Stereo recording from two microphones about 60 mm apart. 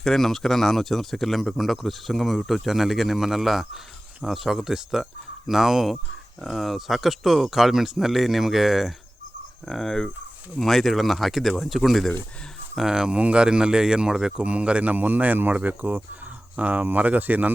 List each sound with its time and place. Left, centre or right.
0.0 s speech: centre
9.6 s cricket: centre
10.6 s speech: centre; by 17.5 s right